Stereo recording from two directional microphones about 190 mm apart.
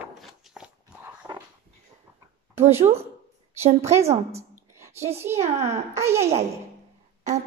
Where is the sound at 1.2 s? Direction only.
5° right (ahead or behind).